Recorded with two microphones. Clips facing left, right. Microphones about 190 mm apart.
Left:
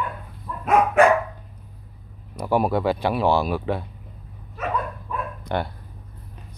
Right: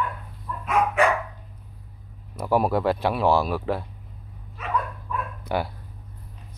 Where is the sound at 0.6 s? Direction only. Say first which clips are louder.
Left 5 dB; 45° left (ahead or behind).